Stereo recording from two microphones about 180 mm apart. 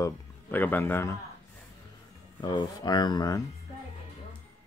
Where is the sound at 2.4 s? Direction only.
25° left (ahead or behind).